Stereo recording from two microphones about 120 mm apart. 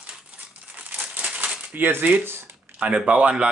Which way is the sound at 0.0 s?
10° right (ahead or behind).